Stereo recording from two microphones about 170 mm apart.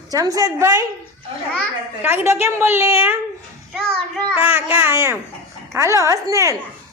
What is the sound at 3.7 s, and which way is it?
Child singing, centre (ahead or behind).